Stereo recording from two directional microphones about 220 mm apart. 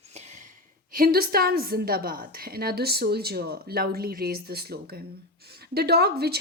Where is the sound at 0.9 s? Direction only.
40° right (ahead or behind).